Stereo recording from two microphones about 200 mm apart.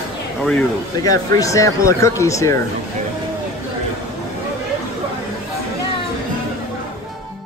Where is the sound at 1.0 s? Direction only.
15° left (ahead or behind).